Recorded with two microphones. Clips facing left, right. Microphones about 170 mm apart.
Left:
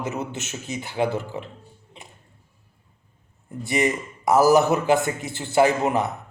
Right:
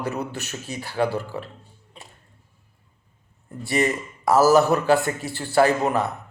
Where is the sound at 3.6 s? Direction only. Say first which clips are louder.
Even; 20° left (ahead or behind).